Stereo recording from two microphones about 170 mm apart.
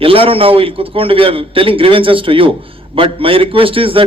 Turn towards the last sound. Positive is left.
turn(degrees=-30)  # may be behind; listen again after turning